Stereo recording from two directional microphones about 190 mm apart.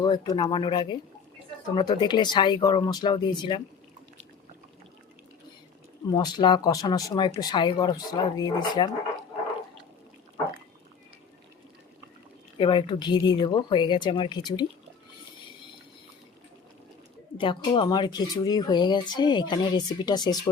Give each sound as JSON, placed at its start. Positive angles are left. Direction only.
{"t": 0.0, "sound": "speech", "side_deg": 20}
{"t": 6.1, "sound": "speech", "side_deg": 25}
{"t": 12.5, "sound": "speech", "side_deg": 25}
{"t": 17.3, "sound": "speech", "side_deg": 25}